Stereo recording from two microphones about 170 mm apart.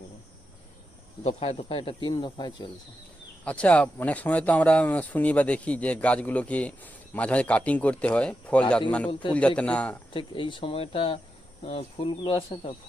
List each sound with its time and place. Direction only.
1.2 s speech: 35° left (ahead or behind)
3.4 s speech: 5° left (ahead or behind)
10.1 s speech: 30° left (ahead or behind)